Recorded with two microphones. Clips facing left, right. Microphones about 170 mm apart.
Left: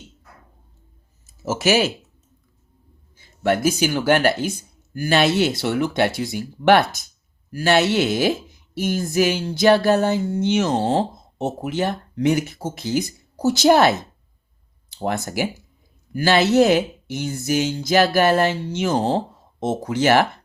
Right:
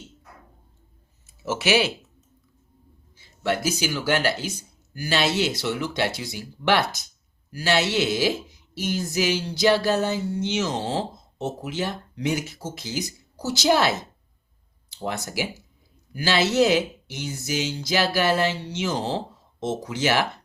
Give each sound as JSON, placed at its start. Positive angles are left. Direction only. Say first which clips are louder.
{"t": 1.3, "sound": "speech", "louder": "left 3 dB", "side_deg": 40}
{"t": 3.2, "sound": "a woman's voice", "louder": "left 5 dB", "side_deg": 55}